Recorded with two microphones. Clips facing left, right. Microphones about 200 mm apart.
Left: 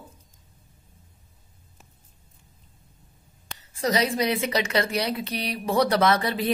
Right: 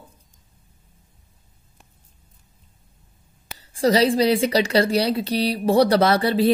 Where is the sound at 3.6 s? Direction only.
30° right (ahead or behind).